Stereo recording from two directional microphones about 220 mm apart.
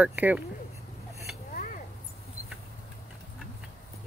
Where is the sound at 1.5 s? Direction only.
35° left (ahead or behind).